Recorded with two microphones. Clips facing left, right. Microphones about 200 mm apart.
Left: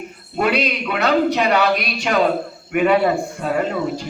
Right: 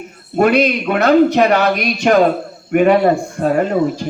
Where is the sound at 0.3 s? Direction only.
50° right (ahead or behind).